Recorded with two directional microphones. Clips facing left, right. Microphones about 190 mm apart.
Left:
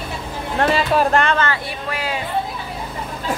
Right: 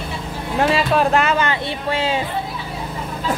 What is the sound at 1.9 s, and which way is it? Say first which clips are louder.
Speech: right 5 dB; 25° right (ahead or behind).